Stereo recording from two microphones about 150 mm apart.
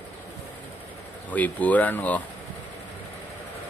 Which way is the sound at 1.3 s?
10° left (ahead or behind).